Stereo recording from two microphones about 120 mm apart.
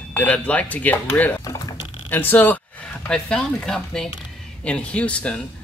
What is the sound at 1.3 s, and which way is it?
Typing, 30° left (ahead or behind).